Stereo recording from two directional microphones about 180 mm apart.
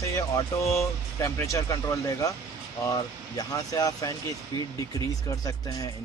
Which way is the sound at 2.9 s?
20° left (ahead or behind).